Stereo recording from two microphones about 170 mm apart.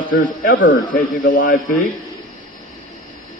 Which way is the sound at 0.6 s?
90° left.